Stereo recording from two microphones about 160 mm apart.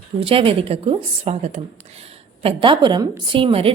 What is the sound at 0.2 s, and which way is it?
A woman's voice, 35° right (ahead or behind).